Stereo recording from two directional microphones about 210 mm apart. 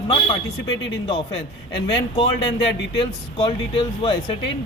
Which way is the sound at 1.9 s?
30° left (ahead or behind).